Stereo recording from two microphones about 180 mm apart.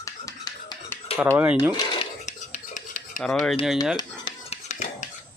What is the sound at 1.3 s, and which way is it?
Cutlery, 10° right (ahead or behind).